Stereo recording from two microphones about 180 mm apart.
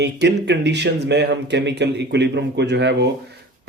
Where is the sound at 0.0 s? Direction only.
70° right (ahead or behind).